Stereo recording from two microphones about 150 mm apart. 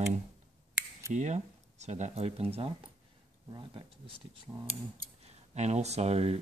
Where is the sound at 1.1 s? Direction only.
50° right (ahead or behind).